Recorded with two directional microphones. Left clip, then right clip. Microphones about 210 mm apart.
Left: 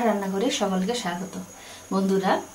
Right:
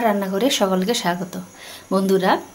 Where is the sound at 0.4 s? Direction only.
45° right (ahead or behind).